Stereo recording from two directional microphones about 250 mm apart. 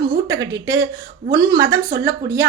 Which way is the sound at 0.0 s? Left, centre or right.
Centre.